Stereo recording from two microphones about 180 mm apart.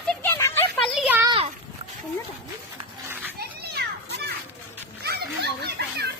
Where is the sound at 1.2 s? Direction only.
25° right (ahead or behind).